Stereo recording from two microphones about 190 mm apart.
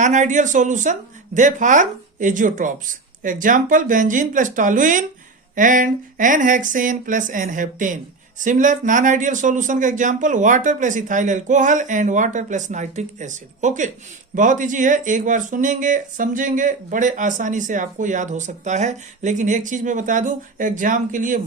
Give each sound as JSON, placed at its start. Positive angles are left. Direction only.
{"t": 0.0, "sound": "speech", "side_deg": -40}